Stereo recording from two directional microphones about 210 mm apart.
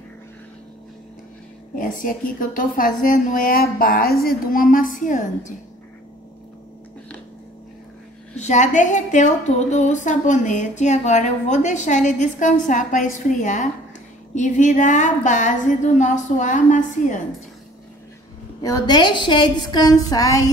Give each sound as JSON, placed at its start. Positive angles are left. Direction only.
{"t": 1.8, "sound": "a woman's voice", "side_deg": 40}
{"t": 8.4, "sound": "a woman's voice", "side_deg": 35}
{"t": 18.6, "sound": "a woman's voice", "side_deg": 20}